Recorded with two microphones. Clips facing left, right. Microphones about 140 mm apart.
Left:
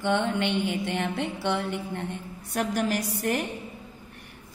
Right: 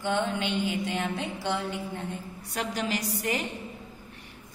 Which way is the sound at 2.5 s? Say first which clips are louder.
Left 4 dB; 55° left (ahead or behind).